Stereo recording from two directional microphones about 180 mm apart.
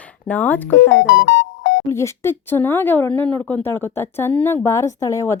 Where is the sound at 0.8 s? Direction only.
90° left.